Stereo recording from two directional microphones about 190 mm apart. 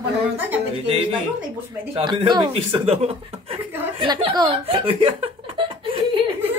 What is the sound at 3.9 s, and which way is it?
Chuckle, 25° right (ahead or behind).